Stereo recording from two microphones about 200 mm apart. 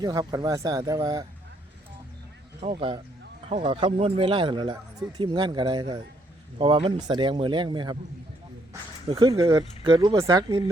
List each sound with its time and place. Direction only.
0.0 s speech: 20° right (ahead or behind)
2.6 s speech: 30° right (ahead or behind)
9.0 s speech: 20° right (ahead or behind)